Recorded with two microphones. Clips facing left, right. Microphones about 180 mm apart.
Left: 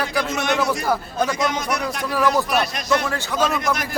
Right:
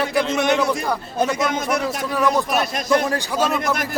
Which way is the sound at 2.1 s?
Centre (ahead or behind).